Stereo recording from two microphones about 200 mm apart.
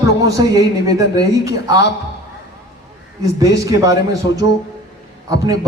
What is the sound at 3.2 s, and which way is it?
Speech, 15° right (ahead or behind).